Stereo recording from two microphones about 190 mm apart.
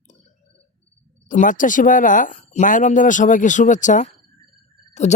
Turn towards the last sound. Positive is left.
turn(degrees=35)  # may be behind; listen again after turning